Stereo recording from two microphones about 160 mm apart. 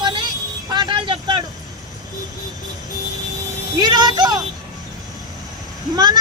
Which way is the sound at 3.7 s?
25° right (ahead or behind).